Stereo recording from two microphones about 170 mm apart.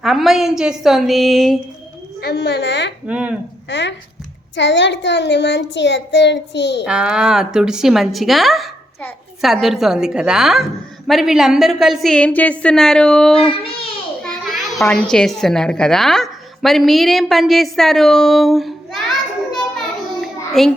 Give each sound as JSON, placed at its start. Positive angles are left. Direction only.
{"t": 0.0, "sound": "a woman's voice", "side_deg": 0}
{"t": 2.2, "sound": "a woman's voice", "side_deg": 80}
{"t": 3.1, "sound": "speech", "side_deg": -10}
{"t": 3.7, "sound": "a child's voice", "side_deg": 90}
{"t": 6.8, "sound": "a woman's voice", "side_deg": -5}
{"t": 13.3, "sound": "speech", "side_deg": 35}
{"t": 14.2, "sound": "a child's voice", "side_deg": 5}
{"t": 20.2, "sound": "child singing", "side_deg": 0}